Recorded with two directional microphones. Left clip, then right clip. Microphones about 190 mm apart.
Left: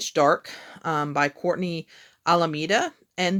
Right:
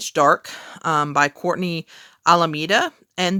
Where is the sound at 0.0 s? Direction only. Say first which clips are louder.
Right 4 dB; 30° right (ahead or behind).